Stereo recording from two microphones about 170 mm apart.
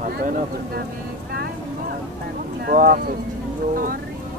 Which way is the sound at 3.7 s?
55° right (ahead or behind).